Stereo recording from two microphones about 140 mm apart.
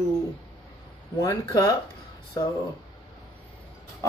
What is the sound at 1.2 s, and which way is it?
Speech, 25° left (ahead or behind).